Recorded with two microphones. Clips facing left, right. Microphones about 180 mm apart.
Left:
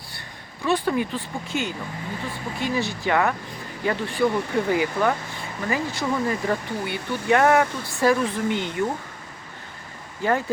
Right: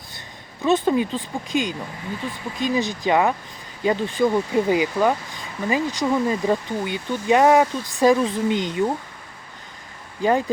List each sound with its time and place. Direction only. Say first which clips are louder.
0.6 s speech: right 4 dB; 20° right (ahead or behind)
10.2 s speech: right 3 dB; 15° right (ahead or behind)